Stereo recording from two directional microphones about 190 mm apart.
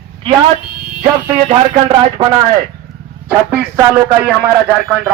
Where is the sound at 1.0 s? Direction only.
20° right (ahead or behind).